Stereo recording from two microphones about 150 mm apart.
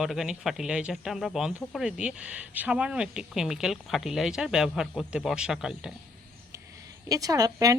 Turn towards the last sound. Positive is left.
turn(degrees=-25)  # may be behind; listen again after turning